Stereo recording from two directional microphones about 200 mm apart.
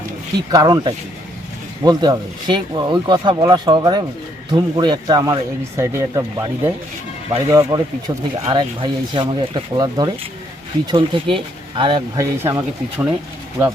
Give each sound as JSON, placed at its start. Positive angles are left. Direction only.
{"t": 0.5, "sound": "speech", "side_deg": -20}